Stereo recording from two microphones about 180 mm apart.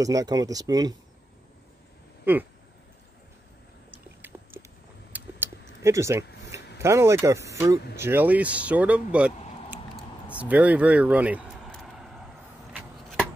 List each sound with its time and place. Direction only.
0.0 s speech: 20° right (ahead or behind)
2.3 s speech: 10° right (ahead or behind)
3.9 s a sound: 10° right (ahead or behind)
5.9 s speech: 15° right (ahead or behind)
10.3 s vehicle: 5° right (ahead or behind)
12.7 s a sound: centre (ahead or behind)